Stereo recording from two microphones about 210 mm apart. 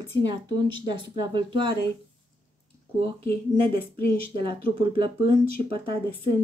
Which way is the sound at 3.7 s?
45° left (ahead or behind).